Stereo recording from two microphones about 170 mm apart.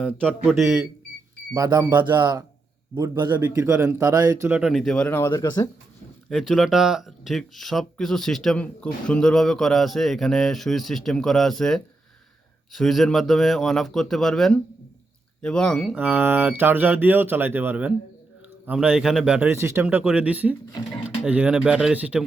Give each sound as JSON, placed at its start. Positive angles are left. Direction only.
{"t": 0.4, "sound": "speech", "side_deg": 0}
{"t": 1.5, "sound": "speech", "side_deg": -20}
{"t": 4.7, "sound": "speech", "side_deg": 0}
{"t": 5.3, "sound": "speech", "side_deg": 25}
{"t": 6.2, "sound": "speech", "side_deg": 0}
{"t": 16.0, "sound": "speech", "side_deg": -10}